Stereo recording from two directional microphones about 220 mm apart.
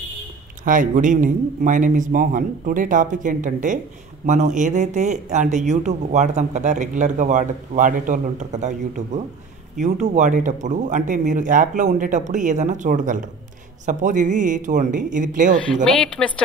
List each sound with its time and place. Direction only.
0.7 s speech: 35° right (ahead or behind)
15.6 s speech: centre (ahead or behind)